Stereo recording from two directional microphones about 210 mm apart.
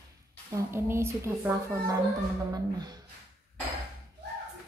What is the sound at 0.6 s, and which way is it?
Speech, 10° right (ahead or behind).